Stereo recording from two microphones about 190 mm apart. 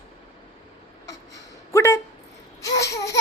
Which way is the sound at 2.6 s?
15° left (ahead or behind).